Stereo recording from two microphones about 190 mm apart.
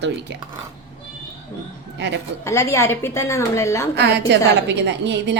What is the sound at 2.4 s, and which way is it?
A woman's voice, 15° left (ahead or behind).